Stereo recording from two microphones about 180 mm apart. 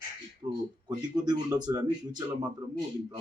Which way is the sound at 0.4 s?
30° right (ahead or behind).